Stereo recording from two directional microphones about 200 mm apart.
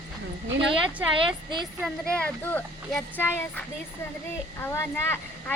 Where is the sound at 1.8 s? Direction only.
5° left (ahead or behind).